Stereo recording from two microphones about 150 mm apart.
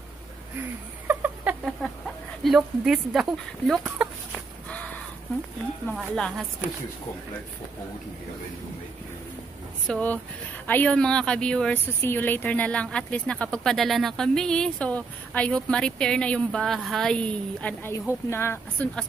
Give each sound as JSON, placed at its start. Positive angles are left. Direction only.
{"t": 0.6, "sound": "a sound", "side_deg": -15}
{"t": 2.4, "sound": "speech", "side_deg": 0}
{"t": 5.9, "sound": "speech", "side_deg": 5}
{"t": 9.8, "sound": "speech", "side_deg": 10}